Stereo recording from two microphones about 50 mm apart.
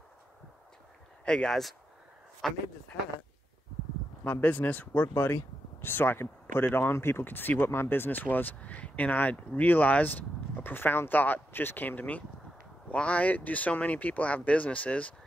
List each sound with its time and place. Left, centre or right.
1.2 s speech: centre
1.5 s a man's voice: centre
4.2 s speech: left
5.0 s speech: left